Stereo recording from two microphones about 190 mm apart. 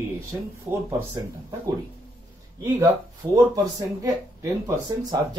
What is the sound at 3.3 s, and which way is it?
Speech, 20° right (ahead or behind).